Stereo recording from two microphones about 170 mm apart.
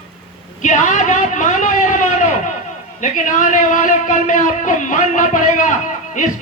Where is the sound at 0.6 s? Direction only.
45° left (ahead or behind).